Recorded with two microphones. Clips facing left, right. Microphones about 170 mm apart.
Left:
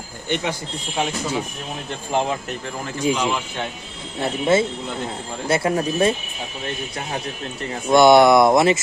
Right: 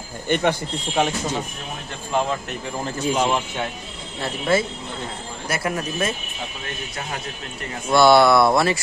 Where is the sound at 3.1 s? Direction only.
35° right (ahead or behind).